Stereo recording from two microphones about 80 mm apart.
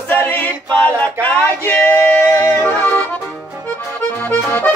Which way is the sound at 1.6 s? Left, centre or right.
Left.